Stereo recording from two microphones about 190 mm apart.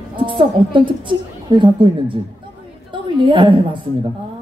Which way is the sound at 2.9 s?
25° right (ahead or behind).